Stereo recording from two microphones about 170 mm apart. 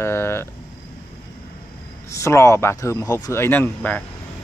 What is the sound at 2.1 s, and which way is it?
Speech, 15° left (ahead or behind).